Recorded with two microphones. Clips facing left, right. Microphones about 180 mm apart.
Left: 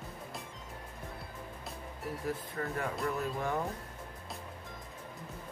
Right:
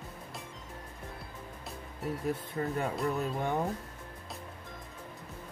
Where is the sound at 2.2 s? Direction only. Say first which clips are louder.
Right 3 dB; 20° right (ahead or behind).